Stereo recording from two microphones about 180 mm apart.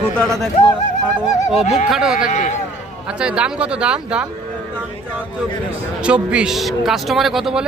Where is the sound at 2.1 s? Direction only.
45° left (ahead or behind).